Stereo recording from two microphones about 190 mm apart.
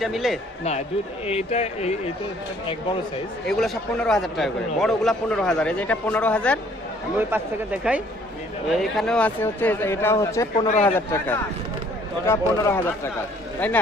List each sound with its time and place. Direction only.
0.0 s a man's voice: centre (ahead or behind)
1.2 s speech: 35° left (ahead or behind)
3.4 s a man's voice: 5° left (ahead or behind)
7.2 s speech: 10° right (ahead or behind); by 10.5 s 15° left (ahead or behind)
10.7 s speech: 35° left (ahead or behind)
10.9 s speech: 10° left (ahead or behind)